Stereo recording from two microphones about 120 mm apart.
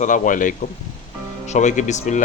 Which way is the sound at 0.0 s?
90° left.